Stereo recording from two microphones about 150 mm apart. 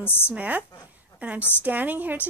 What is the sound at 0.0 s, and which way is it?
Speech, 15° left (ahead or behind).